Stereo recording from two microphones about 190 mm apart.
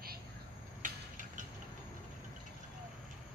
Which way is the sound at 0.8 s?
45° right (ahead or behind).